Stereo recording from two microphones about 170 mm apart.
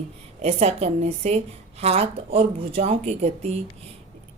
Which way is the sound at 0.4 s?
35° right (ahead or behind).